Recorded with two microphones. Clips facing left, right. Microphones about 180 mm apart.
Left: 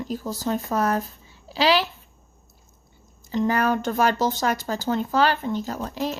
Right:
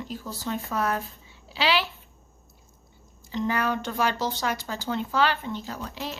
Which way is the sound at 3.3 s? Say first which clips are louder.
Left 5 dB; 45° left (ahead or behind).